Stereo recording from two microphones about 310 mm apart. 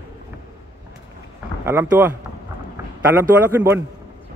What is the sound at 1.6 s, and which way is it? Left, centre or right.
Speech, centre.